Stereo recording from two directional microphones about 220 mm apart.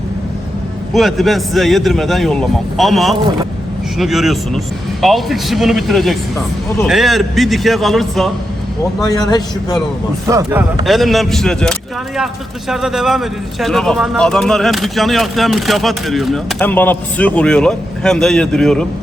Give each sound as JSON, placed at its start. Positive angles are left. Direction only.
{"t": 0.9, "sound": "speech", "side_deg": 0}
{"t": 9.0, "sound": "a man's voice", "side_deg": 15}
{"t": 10.2, "sound": "speech", "side_deg": -10}
{"t": 10.8, "sound": "speech", "side_deg": 0}